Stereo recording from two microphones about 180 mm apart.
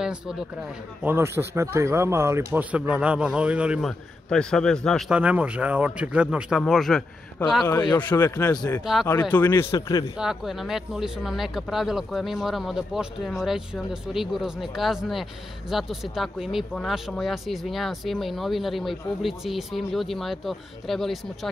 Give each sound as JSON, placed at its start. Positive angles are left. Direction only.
{"t": 0.0, "sound": "speech", "side_deg": -5}
{"t": 7.6, "sound": "a man's voice", "side_deg": 20}
{"t": 10.1, "sound": "speech", "side_deg": -5}